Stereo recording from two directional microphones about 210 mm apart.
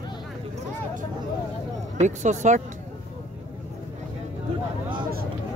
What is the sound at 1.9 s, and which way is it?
Speech, 35° right (ahead or behind).